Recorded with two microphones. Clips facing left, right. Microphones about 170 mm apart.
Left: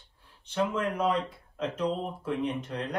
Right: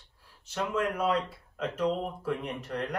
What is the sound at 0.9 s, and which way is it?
Speech, 10° right (ahead or behind).